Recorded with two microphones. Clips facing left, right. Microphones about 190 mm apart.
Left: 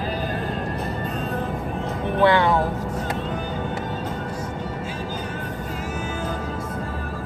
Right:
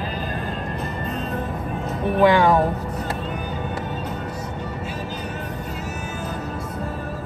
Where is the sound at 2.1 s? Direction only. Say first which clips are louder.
Right 2 dB; 15° right (ahead or behind).